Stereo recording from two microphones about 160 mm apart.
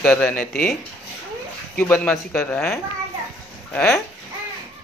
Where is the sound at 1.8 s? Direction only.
15° left (ahead or behind).